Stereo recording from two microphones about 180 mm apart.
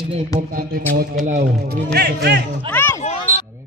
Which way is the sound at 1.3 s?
60° right (ahead or behind).